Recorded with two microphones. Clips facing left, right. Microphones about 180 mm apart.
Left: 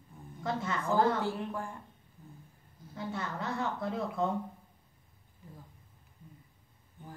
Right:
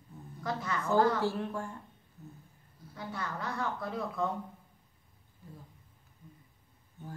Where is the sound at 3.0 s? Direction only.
25° left (ahead or behind).